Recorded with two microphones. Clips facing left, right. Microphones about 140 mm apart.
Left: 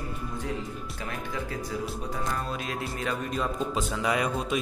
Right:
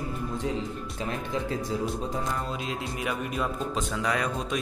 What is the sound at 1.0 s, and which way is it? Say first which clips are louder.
Music: right 4 dB; 25° right (ahead or behind).